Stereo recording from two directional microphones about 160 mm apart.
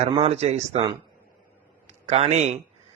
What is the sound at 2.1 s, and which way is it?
Speech, 40° right (ahead or behind).